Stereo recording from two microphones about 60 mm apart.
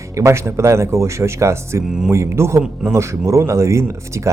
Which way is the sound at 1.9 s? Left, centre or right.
Centre.